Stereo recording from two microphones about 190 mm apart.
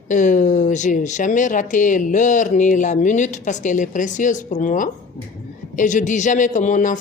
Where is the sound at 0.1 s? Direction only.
40° left (ahead or behind).